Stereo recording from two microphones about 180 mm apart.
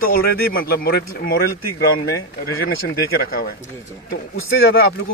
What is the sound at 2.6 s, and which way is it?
Speech, 55° left (ahead or behind).